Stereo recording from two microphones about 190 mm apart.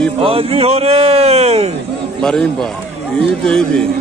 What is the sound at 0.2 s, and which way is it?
A man's voice, 30° right (ahead or behind).